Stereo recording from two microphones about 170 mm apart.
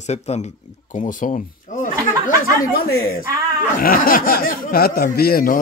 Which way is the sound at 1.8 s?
55° left (ahead or behind).